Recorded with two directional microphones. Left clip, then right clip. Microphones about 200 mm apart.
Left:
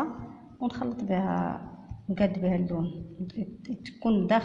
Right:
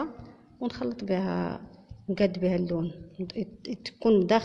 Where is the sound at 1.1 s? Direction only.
45° right (ahead or behind).